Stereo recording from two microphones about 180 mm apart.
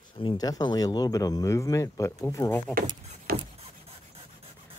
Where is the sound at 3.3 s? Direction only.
55° right (ahead or behind).